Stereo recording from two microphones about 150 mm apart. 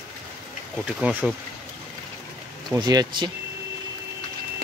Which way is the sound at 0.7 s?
5° right (ahead or behind).